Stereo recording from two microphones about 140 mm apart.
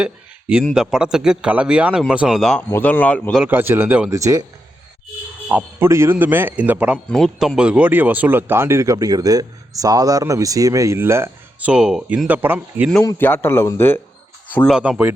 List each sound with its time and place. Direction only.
0.0 s speech: 5° right (ahead or behind)
2.6 s a man's voice: 15° left (ahead or behind)
3.4 s speech: 15° right (ahead or behind)
4.1 s speech: 20° right (ahead or behind)
5.5 s speech: 10° right (ahead or behind)
7.1 s speech: centre (ahead or behind)
13.0 s a man's voice: 15° left (ahead or behind)
14.7 s speech: 10° right (ahead or behind)